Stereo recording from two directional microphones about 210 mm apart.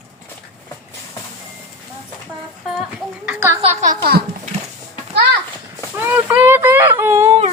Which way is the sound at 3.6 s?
30° right (ahead or behind).